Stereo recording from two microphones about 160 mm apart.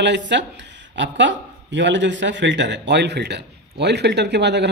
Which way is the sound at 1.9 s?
90° right.